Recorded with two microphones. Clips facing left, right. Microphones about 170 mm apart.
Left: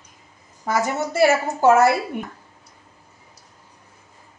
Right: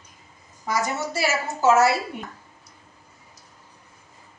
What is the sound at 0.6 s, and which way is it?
A woman's voice, 55° left (ahead or behind).